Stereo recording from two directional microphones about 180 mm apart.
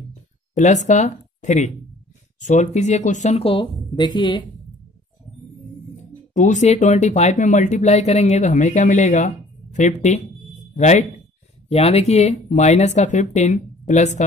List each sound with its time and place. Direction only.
0.6 s speech: 40° left (ahead or behind); by 4.5 s 25° left (ahead or behind)
6.3 s speech: 45° left (ahead or behind)